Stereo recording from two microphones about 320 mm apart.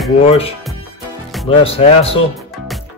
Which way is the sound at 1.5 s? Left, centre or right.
Centre.